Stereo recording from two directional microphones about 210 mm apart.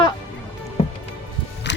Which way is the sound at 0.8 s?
30° left (ahead or behind).